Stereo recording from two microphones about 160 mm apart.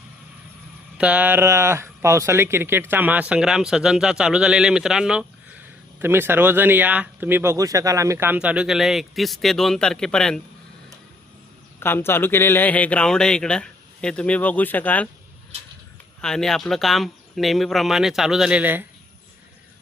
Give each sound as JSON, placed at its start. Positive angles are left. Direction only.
{"t": 0.9, "sound": "speech", "side_deg": -10}
{"t": 11.8, "sound": "a man's voice", "side_deg": 15}
{"t": 16.2, "sound": "speech", "side_deg": 5}